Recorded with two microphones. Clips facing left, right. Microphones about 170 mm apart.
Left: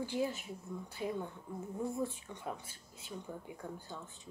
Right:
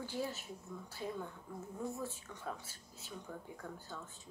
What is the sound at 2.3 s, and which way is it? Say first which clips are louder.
A woman's voice: left 2 dB; 15° left (ahead or behind).